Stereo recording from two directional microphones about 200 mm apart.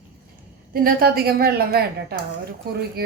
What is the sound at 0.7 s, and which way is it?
A woman's voice, 50° right (ahead or behind).